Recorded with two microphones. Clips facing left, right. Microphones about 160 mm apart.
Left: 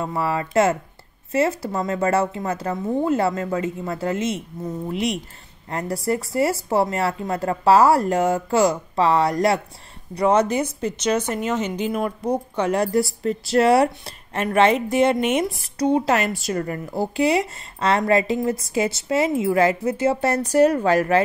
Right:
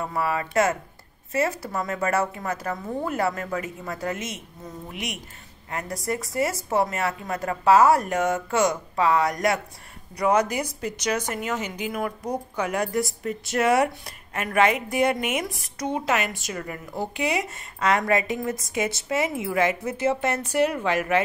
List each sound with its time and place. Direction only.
0.0 s speech: 25° left (ahead or behind)